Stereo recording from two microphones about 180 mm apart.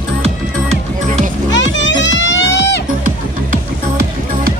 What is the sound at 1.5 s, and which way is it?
Music, 90° left.